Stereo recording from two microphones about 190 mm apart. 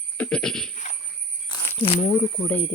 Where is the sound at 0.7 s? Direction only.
40° left (ahead or behind).